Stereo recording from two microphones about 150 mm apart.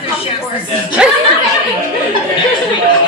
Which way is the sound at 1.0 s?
5° right (ahead or behind).